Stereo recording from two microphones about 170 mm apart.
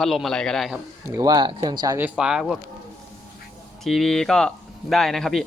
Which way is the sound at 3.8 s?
Centre (ahead or behind).